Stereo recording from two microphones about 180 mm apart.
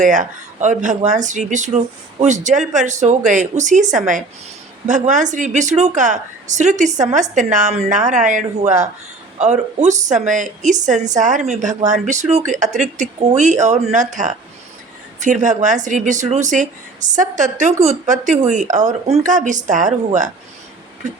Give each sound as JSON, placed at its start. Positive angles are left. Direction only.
{"t": 0.0, "sound": "speech", "side_deg": -45}